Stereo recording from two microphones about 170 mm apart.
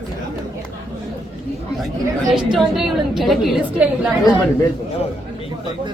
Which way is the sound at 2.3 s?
Centre (ahead or behind).